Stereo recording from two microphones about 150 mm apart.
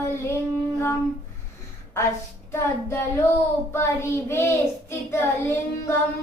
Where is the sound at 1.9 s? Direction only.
15° left (ahead or behind).